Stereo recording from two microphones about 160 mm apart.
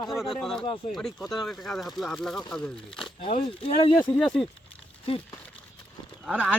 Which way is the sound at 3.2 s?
40° left (ahead or behind).